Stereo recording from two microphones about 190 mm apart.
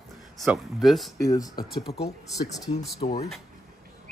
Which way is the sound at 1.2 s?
20° left (ahead or behind).